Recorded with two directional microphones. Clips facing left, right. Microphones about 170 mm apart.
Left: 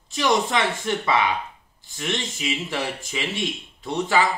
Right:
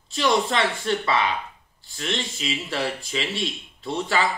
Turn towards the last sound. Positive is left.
turn(degrees=20)  # may be behind; listen again after turning